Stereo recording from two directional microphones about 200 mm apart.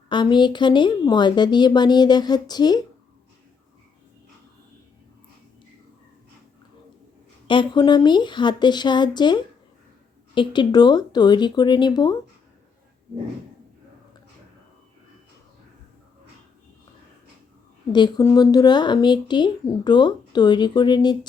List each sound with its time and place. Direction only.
0.1 s speech: 20° left (ahead or behind)
7.4 s speech: 25° left (ahead or behind)
17.9 s speech: 20° left (ahead or behind)